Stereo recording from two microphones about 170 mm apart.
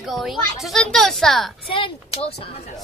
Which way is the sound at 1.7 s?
30° left (ahead or behind).